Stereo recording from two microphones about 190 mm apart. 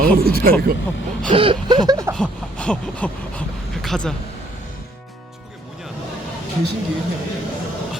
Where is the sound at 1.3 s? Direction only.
25° right (ahead or behind).